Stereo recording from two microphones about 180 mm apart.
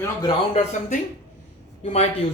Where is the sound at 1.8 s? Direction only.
35° left (ahead or behind).